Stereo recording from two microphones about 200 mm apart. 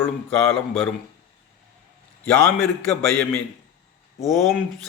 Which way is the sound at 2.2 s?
5° left (ahead or behind).